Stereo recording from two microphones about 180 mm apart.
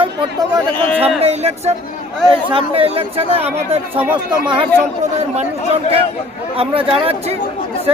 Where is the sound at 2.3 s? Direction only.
30° right (ahead or behind).